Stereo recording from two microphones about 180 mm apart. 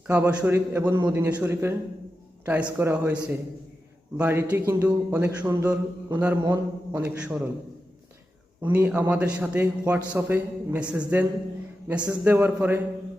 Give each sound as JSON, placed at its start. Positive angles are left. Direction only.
{"t": 0.1, "sound": "a man's voice", "side_deg": -10}
{"t": 8.6, "sound": "a man's voice", "side_deg": -10}